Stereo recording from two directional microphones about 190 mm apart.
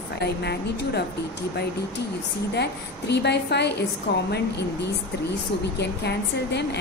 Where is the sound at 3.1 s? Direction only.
60° left (ahead or behind).